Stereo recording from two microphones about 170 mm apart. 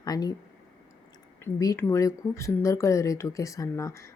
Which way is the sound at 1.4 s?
15° left (ahead or behind).